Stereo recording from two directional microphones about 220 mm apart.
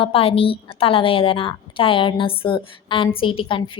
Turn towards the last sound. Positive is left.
turn(degrees=25)  # may be behind; listen again after turning